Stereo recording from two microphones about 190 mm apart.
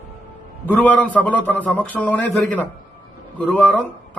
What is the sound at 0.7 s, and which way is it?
Speech, 10° left (ahead or behind).